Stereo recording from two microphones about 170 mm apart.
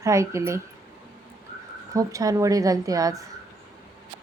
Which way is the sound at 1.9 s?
20° right (ahead or behind).